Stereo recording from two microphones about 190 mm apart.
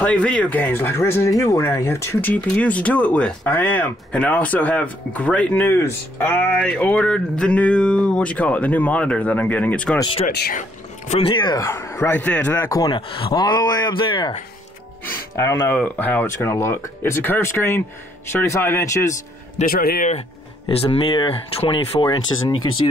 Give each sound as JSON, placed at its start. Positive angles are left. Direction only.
{"t": 0.0, "sound": "speech", "side_deg": 5}
{"t": 11.1, "sound": "a man's voice", "side_deg": 30}
{"t": 15.3, "sound": "speech", "side_deg": 15}
{"t": 19.6, "sound": "speech", "side_deg": 50}
{"t": 20.1, "sound": "a man's voice", "side_deg": 30}